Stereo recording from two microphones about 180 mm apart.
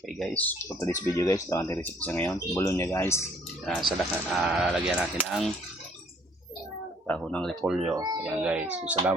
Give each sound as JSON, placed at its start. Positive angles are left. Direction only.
{"t": 0.2, "sound": "speech", "side_deg": 10}
{"t": 3.8, "sound": "speech", "side_deg": 0}
{"t": 7.1, "sound": "speech", "side_deg": 5}
{"t": 7.9, "sound": "speech", "side_deg": -20}
{"t": 8.2, "sound": "speech", "side_deg": -5}